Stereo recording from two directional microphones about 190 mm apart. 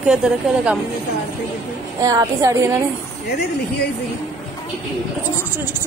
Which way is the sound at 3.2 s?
60° left (ahead or behind).